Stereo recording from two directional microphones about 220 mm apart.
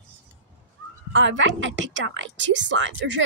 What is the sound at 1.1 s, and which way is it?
A woman's voice, 60° right (ahead or behind).